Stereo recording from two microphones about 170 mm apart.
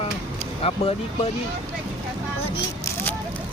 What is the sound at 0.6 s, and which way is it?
Speech, 35° left (ahead or behind).